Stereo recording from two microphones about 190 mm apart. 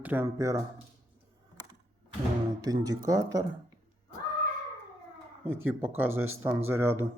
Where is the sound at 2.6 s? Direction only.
20° right (ahead or behind).